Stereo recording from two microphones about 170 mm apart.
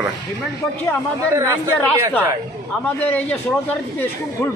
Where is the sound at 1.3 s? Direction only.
15° right (ahead or behind).